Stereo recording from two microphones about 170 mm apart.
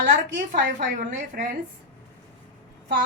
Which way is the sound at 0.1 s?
50° right (ahead or behind).